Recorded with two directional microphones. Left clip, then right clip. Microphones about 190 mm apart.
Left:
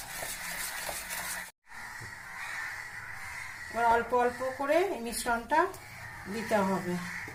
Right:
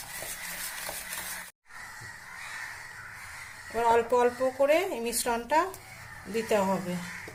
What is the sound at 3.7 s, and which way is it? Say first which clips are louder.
Speech: right 2 dB; 50° right (ahead or behind).